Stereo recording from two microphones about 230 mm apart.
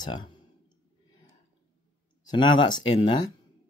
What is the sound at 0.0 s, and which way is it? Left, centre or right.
Speech, centre.